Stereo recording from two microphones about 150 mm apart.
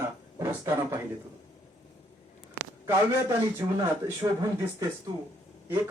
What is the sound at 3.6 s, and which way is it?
Speech, 30° right (ahead or behind).